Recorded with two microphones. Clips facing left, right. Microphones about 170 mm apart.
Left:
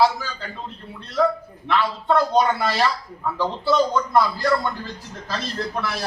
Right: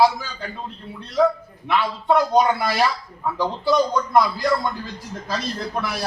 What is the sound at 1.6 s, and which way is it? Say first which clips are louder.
Speech: right 1 dB; 10° right (ahead or behind).